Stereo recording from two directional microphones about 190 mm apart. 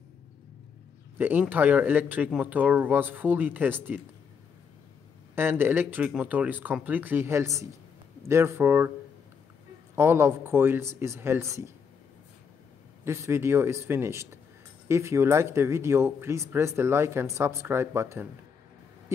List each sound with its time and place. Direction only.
1.1 s speech: 10° right (ahead or behind)
5.3 s speech: 10° right (ahead or behind)
9.9 s speech: 10° right (ahead or behind)
13.0 s speech: 15° right (ahead or behind)